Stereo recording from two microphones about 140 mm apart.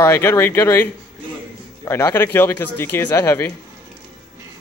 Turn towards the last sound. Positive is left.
turn(degrees=20)  # may be behind; listen again after turning